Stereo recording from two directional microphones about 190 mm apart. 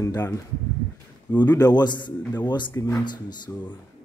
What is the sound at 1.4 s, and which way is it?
Speech, 20° left (ahead or behind).